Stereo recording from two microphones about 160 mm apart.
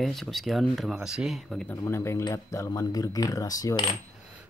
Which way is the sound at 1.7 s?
15° left (ahead or behind).